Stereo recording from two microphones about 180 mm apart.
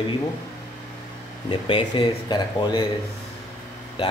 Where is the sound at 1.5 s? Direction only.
30° left (ahead or behind).